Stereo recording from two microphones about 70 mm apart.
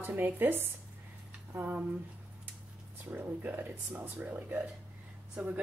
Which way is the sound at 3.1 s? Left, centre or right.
Right.